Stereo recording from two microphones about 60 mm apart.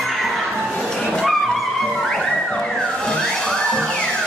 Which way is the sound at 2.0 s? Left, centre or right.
Centre.